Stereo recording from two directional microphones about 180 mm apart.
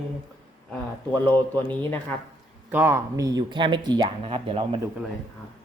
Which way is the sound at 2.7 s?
10° right (ahead or behind).